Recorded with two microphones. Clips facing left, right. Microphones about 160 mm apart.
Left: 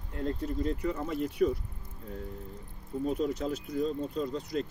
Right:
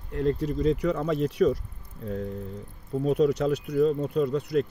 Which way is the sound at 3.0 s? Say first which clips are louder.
Right 8 dB; 70° right (ahead or behind).